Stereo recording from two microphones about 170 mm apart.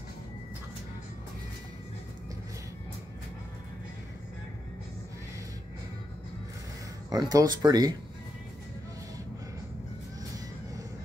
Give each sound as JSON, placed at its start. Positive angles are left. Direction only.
{"t": 7.1, "sound": "speech", "side_deg": -20}